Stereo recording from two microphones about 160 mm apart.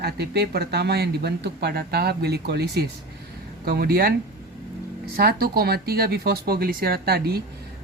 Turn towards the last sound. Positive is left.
turn(degrees=-75)  # may be behind; listen again after turning